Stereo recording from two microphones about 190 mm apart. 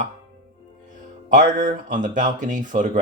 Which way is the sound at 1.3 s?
45° right (ahead or behind).